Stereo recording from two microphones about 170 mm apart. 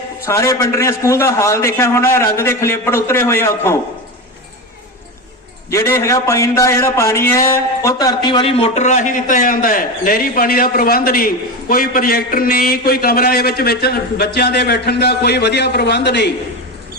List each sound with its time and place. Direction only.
0.3 s a man's voice: 20° left (ahead or behind)
5.7 s a man's voice: 15° left (ahead or behind); by 16.3 s 85° left